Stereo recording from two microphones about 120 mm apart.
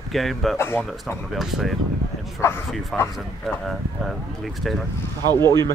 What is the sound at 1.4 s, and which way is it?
Speech, 5° right (ahead or behind).